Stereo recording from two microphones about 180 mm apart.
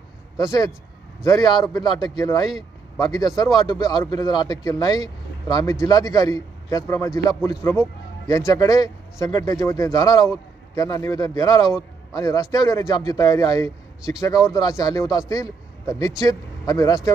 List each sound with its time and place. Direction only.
0.4 s a man's voice: 20° left (ahead or behind)